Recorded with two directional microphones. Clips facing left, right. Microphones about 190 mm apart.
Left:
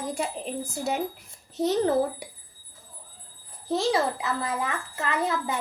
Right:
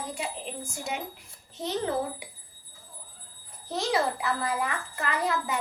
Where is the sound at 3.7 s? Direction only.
25° left (ahead or behind).